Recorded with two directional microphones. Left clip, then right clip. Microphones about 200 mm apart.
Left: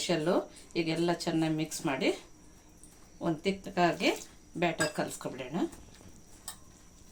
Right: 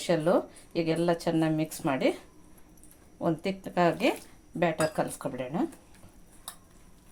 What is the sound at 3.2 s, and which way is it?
Speech, 55° right (ahead or behind).